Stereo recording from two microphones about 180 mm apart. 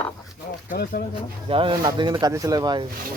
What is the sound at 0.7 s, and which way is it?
Speech, 60° left (ahead or behind).